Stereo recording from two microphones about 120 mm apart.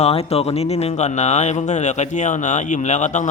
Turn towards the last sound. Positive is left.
turn(degrees=90)